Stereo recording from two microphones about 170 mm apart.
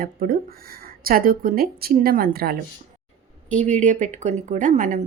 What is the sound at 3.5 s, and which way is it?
A woman's voice, 45° right (ahead or behind).